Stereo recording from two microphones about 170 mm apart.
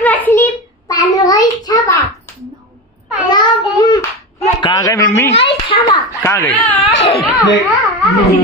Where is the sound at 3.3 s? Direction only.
25° left (ahead or behind).